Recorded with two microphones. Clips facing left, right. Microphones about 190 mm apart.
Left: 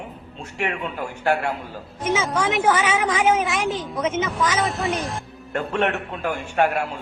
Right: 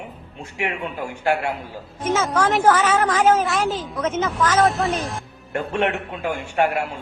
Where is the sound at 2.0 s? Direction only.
5° left (ahead or behind).